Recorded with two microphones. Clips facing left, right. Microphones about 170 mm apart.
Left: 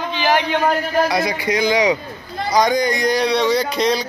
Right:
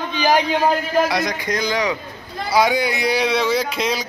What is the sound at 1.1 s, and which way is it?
Speech, 5° left (ahead or behind).